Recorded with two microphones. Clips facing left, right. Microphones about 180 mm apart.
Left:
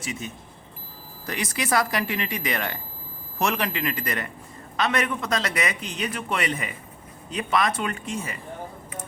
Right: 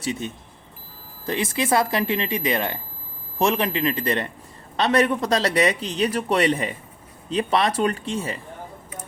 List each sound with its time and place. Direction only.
0.0 s speech: 35° right (ahead or behind)
1.3 s speech: 25° right (ahead or behind)